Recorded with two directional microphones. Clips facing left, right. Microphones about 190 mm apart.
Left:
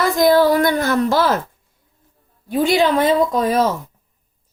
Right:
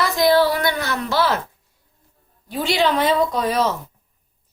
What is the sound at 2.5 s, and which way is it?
Speech, 45° left (ahead or behind).